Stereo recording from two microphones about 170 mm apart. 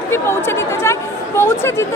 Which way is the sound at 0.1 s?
15° left (ahead or behind).